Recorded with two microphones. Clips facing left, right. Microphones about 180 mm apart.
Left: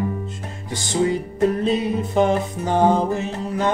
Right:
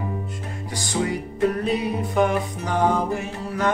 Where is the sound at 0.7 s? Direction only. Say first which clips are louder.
Left 5 dB; 25° left (ahead or behind).